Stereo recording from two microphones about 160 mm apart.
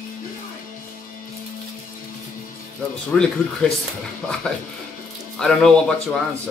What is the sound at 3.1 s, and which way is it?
Speech, 5° left (ahead or behind).